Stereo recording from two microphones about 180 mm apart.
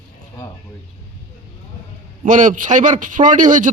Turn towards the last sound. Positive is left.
turn(degrees=-45)  # may be behind; listen again after turning